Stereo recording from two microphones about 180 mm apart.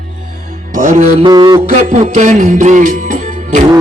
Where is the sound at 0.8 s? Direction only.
40° right (ahead or behind).